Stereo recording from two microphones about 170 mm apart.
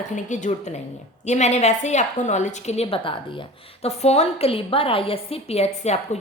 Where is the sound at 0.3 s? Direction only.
45° left (ahead or behind).